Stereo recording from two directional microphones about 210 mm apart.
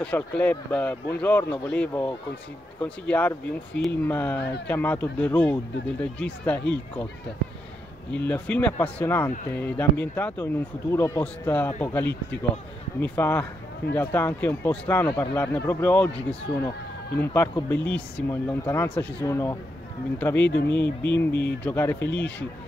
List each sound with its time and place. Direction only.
0.0 s a man's voice: 5° left (ahead or behind)
4.4 s speech: 50° left (ahead or behind)
4.6 s a man's voice: 10° left (ahead or behind)
8.1 s a man's voice: 5° left (ahead or behind)